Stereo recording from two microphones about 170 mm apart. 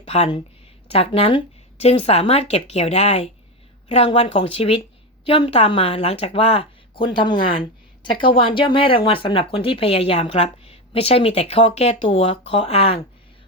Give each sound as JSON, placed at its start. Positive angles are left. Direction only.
{"t": 0.0, "sound": "speech", "side_deg": 35}
{"t": 8.2, "sound": "speech", "side_deg": 30}